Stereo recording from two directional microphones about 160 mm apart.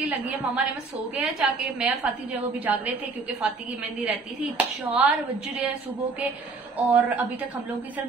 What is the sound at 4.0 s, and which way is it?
A woman's voice, 5° right (ahead or behind).